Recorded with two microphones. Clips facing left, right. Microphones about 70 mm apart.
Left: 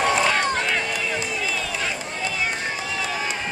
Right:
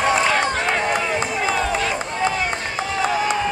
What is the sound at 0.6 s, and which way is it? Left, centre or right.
Run, right.